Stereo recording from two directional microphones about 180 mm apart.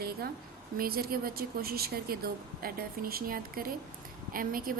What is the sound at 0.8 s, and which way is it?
A woman's voice, 55° right (ahead or behind).